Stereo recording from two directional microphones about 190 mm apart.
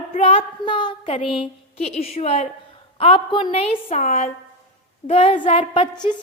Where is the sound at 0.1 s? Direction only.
30° left (ahead or behind).